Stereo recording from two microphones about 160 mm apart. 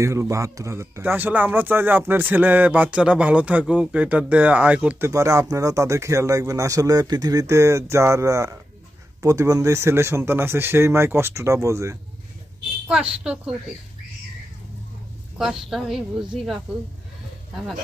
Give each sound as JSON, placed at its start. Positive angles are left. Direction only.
{"t": 0.0, "sound": "speech", "side_deg": -20}
{"t": 12.8, "sound": "a woman's voice", "side_deg": -5}
{"t": 15.3, "sound": "a woman's voice", "side_deg": -5}